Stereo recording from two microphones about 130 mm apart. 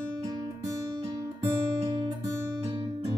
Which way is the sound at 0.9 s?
40° right (ahead or behind).